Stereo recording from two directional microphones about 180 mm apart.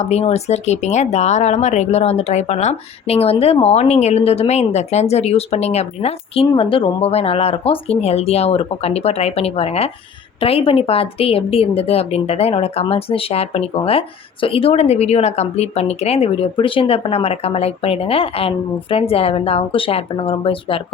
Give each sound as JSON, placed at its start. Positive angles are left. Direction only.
{"t": 0.0, "sound": "speech", "side_deg": 35}